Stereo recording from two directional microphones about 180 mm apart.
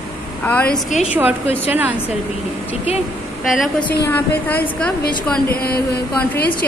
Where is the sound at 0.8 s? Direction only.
40° left (ahead or behind).